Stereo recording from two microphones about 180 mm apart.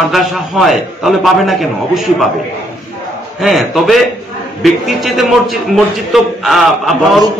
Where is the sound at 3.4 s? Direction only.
Centre (ahead or behind).